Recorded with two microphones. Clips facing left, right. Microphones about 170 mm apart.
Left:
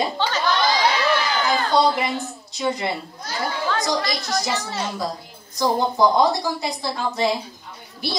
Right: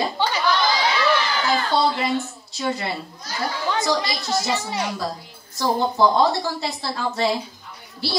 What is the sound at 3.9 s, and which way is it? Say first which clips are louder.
Speech: even; 20° right (ahead or behind).